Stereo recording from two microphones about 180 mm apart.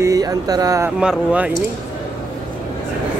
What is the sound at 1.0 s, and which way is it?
Speech, 5° right (ahead or behind).